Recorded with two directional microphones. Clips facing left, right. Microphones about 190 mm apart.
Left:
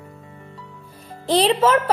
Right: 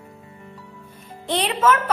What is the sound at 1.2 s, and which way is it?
Speech, 35° left (ahead or behind).